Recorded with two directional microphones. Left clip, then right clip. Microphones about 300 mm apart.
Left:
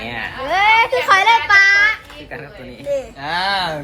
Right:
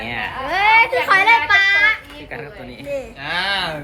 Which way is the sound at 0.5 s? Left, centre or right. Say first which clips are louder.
Left 1 dB; centre.